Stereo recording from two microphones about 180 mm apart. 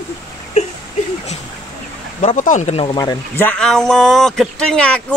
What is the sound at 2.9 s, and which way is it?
Speech, 15° left (ahead or behind).